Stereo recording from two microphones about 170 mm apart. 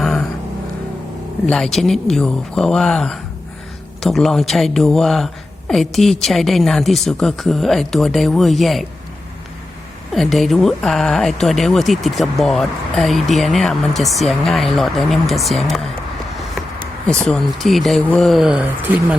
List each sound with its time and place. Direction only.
0.0 s vehicle: 5° left (ahead or behind)
1.5 s speech: centre (ahead or behind)
10.1 s speech: centre (ahead or behind)
17.1 s speech: 5° left (ahead or behind)